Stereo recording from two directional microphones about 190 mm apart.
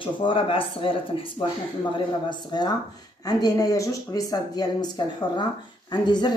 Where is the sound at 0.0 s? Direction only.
25° left (ahead or behind).